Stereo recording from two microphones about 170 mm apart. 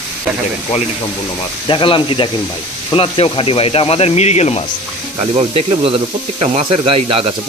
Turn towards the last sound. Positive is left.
turn(degrees=-35)  # may be behind; listen again after turning